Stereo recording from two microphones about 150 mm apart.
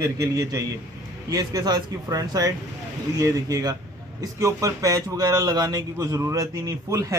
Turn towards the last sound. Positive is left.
turn(degrees=-25)  # may be behind; listen again after turning